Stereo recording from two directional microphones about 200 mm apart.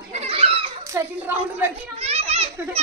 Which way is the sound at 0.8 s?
15° right (ahead or behind).